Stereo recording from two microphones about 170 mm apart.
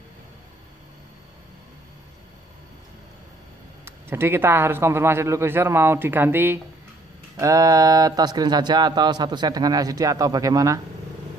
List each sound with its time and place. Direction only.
3.8 s speech: 15° right (ahead or behind)